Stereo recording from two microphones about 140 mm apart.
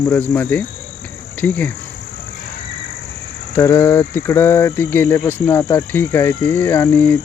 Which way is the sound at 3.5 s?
15° left (ahead or behind).